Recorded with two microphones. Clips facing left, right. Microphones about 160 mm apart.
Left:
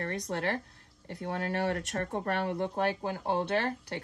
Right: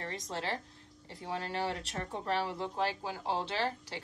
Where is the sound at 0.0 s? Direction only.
60° left (ahead or behind).